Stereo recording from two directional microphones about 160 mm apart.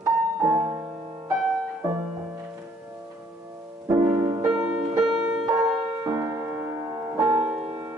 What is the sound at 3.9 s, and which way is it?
Music, 20° right (ahead or behind).